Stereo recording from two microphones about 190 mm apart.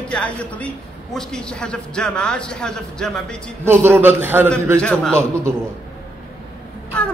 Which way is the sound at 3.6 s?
10° right (ahead or behind).